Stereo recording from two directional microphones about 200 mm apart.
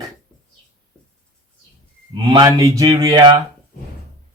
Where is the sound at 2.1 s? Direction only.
20° right (ahead or behind).